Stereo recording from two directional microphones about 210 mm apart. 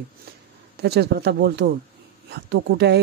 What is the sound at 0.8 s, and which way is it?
Speech, 50° right (ahead or behind).